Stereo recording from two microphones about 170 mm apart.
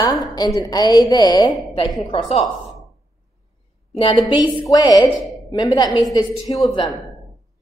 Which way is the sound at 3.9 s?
25° left (ahead or behind).